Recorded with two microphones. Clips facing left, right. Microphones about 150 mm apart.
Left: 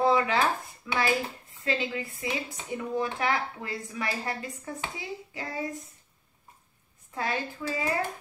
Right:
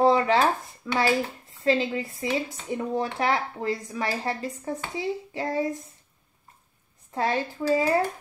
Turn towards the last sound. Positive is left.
turn(degrees=-35)  # may be behind; listen again after turning